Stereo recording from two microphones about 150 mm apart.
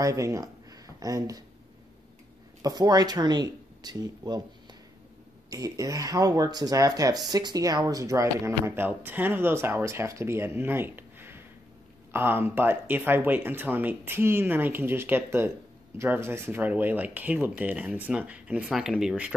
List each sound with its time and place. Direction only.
0.0 s speech: 20° right (ahead or behind)
2.6 s speech: 25° right (ahead or behind)
5.5 s speech: 25° right (ahead or behind); by 19.3 s 5° right (ahead or behind)